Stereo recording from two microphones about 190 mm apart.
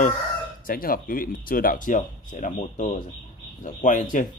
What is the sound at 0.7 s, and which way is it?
Speech, 50° left (ahead or behind).